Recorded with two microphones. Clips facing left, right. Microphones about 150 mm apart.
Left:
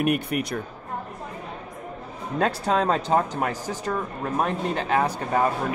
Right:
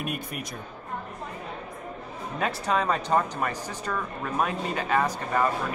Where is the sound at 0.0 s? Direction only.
65° left (ahead or behind).